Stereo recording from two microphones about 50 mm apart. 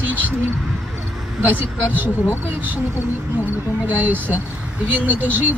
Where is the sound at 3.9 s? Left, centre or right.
Right.